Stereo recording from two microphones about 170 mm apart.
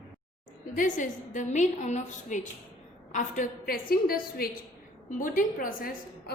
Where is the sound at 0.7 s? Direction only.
50° left (ahead or behind).